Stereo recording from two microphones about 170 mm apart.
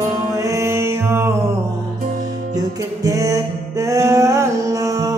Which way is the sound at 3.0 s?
20° right (ahead or behind).